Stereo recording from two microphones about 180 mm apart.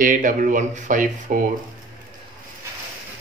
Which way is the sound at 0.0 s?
50° right (ahead or behind).